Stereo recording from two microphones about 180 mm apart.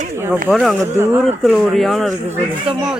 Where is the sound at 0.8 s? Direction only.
15° right (ahead or behind).